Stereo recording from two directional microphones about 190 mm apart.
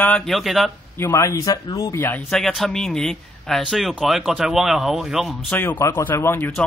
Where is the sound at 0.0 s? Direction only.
5° left (ahead or behind).